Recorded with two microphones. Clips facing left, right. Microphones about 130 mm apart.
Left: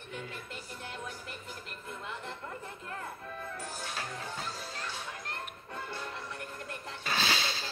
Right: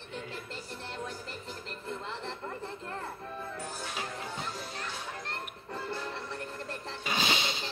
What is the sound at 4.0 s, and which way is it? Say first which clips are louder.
Music: right 2 dB; 20° right (ahead or behind).